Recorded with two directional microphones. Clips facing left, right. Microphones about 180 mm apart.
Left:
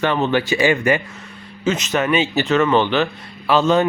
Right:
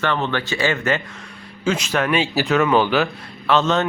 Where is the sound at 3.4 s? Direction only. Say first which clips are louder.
Left 3 dB; 5° left (ahead or behind).